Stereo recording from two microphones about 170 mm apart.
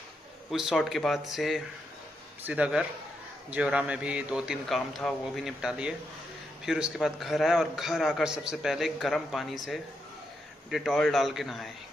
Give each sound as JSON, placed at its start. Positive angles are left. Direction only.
{"t": 0.5, "sound": "a man's voice", "side_deg": 0}
{"t": 10.7, "sound": "a man's voice", "side_deg": 0}